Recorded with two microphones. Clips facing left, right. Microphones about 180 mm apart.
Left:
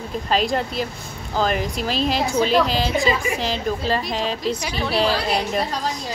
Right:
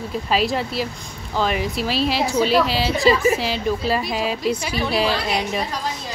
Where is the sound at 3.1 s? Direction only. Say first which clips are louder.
Right 5 dB; 40° right (ahead or behind).